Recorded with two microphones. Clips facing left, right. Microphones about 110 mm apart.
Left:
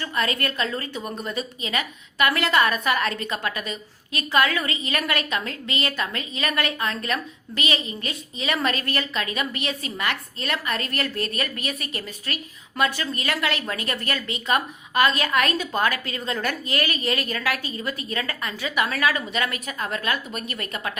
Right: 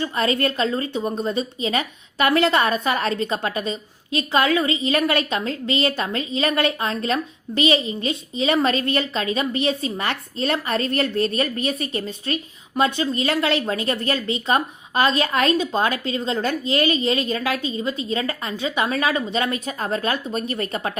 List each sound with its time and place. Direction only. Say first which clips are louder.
0.0 s a woman's voice: right 5 dB; 30° right (ahead or behind)